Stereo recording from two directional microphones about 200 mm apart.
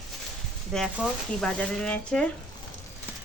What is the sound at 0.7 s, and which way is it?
Speech, 5° left (ahead or behind).